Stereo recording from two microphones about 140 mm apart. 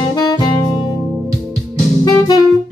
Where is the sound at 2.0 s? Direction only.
25° left (ahead or behind).